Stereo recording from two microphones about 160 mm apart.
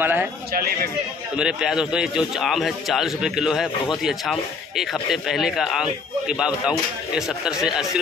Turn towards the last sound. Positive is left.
turn(degrees=-5)  # may be behind; listen again after turning